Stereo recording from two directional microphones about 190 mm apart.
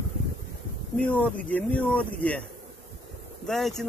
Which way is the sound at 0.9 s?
5° left (ahead or behind).